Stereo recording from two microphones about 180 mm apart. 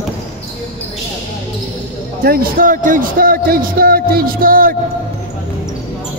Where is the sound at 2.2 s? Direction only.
55° right (ahead or behind).